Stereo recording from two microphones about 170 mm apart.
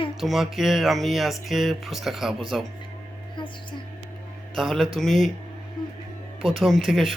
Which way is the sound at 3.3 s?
25° left (ahead or behind).